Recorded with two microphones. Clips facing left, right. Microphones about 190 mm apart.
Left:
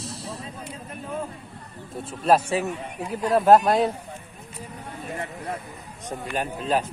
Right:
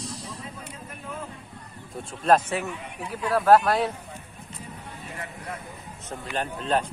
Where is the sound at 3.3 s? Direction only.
25° left (ahead or behind).